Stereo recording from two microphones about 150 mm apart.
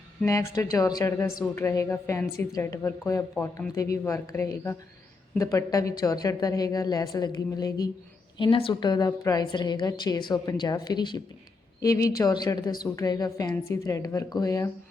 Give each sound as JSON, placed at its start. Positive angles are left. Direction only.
{"t": 0.3, "sound": "a woman's voice", "side_deg": 20}
{"t": 8.4, "sound": "a woman's voice", "side_deg": 35}